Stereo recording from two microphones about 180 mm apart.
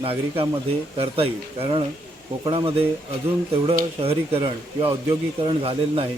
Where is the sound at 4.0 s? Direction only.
35° right (ahead or behind).